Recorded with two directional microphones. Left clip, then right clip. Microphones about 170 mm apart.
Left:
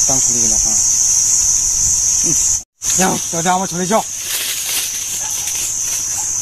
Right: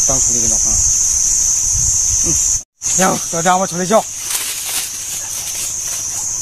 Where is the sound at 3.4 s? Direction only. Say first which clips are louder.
Right 3 dB; centre (ahead or behind).